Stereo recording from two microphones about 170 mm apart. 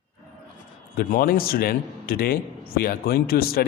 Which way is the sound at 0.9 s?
60° left (ahead or behind).